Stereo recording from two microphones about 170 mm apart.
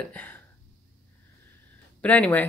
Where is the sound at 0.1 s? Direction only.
10° left (ahead or behind).